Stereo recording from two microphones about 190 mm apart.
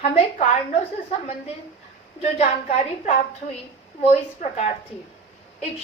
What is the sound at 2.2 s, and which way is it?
A woman's voice, 30° left (ahead or behind).